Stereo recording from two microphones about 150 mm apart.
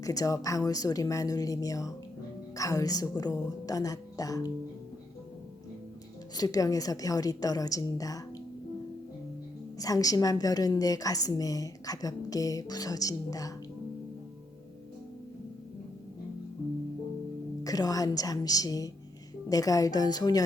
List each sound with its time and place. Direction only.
0.0 s a woman's voice: 25° left (ahead or behind)
6.3 s a woman's voice: 25° left (ahead or behind)
9.7 s a woman's voice: 25° left (ahead or behind)
17.6 s a woman's voice: 25° left (ahead or behind)